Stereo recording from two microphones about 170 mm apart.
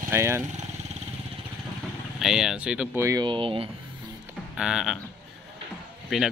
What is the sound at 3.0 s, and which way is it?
Speech, 25° right (ahead or behind).